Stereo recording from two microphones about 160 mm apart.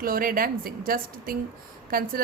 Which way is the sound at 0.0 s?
65° right (ahead or behind).